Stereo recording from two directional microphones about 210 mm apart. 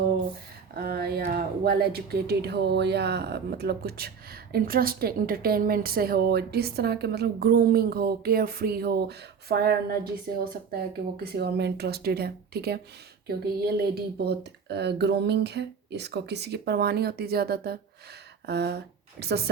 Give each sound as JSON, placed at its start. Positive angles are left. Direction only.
{"t": 0.8, "sound": "speech", "side_deg": -45}